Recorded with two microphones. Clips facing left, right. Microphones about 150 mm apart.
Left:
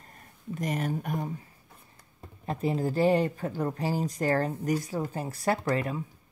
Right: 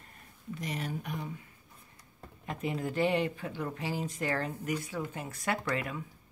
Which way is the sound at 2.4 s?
35° left (ahead or behind).